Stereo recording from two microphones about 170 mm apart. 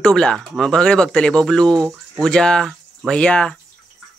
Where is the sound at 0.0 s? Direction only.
5° left (ahead or behind).